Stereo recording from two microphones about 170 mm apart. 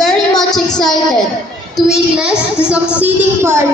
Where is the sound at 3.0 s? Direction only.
15° right (ahead or behind).